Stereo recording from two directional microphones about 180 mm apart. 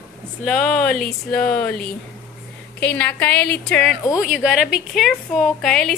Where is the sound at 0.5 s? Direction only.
55° left (ahead or behind).